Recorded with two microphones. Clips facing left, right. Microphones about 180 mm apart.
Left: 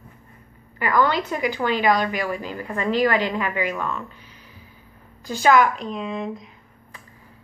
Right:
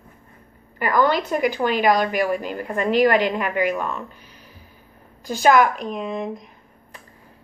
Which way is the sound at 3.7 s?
15° right (ahead or behind).